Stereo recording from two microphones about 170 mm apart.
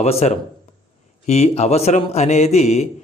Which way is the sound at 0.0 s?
40° left (ahead or behind).